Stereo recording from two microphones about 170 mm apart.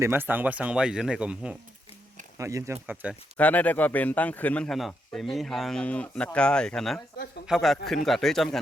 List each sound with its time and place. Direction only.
0.0 s speech: 15° right (ahead or behind)
2.4 s speech: 15° right (ahead or behind)
2.9 s speech: 5° right (ahead or behind)
3.3 s a man's voice: 10° left (ahead or behind)